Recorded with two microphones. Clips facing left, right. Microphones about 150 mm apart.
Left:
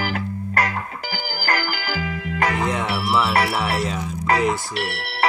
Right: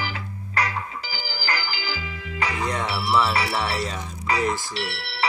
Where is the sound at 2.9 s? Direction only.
10° left (ahead or behind).